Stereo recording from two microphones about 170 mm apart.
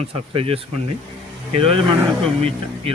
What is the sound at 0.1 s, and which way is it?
Speech, 35° right (ahead or behind).